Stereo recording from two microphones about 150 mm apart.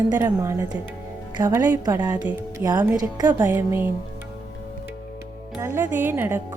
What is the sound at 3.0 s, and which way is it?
Speech, 25° right (ahead or behind).